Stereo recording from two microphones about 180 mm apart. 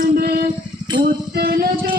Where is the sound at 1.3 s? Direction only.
60° right (ahead or behind).